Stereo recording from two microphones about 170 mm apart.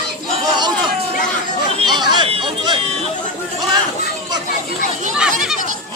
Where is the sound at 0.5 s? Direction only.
25° right (ahead or behind).